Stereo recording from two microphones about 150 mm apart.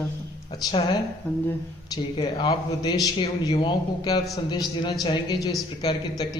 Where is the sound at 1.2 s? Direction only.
10° left (ahead or behind).